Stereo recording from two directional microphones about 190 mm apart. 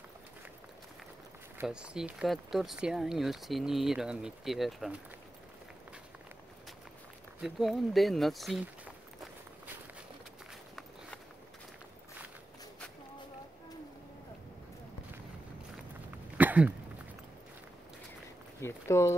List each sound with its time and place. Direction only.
1.6 s speech: 5° right (ahead or behind)
7.3 s speech: centre (ahead or behind)
16.3 s a sound: 10° right (ahead or behind)
18.6 s speech: 15° left (ahead or behind)